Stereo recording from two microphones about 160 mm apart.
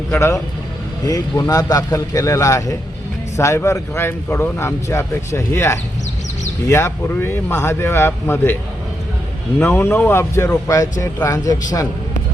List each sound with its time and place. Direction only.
0.1 s a man's voice: 15° left (ahead or behind)
9.7 s a man's voice: 15° left (ahead or behind)